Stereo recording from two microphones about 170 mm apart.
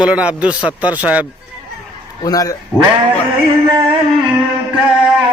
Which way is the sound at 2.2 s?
20° left (ahead or behind).